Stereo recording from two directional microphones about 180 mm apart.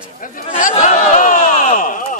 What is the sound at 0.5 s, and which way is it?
Speech, 45° left (ahead or behind).